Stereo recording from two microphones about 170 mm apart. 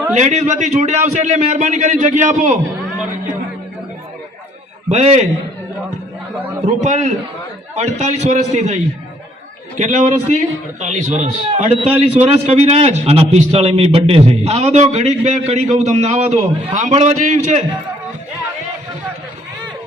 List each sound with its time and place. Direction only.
0.1 s a man's voice: 40° right (ahead or behind)
4.9 s a man's voice: 40° right (ahead or behind)
6.8 s a man's voice: 45° right (ahead or behind)